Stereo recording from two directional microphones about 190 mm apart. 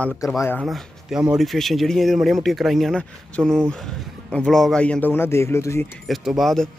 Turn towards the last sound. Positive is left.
turn(degrees=0)  # may be behind; listen again after turning